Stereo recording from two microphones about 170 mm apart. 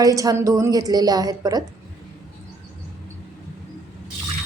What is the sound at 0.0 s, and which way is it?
Speech, 20° right (ahead or behind).